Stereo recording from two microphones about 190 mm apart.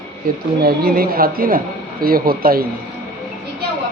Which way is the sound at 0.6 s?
55° right (ahead or behind).